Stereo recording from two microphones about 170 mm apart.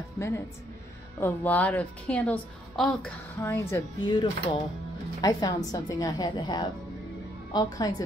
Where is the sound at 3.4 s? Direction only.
15° left (ahead or behind).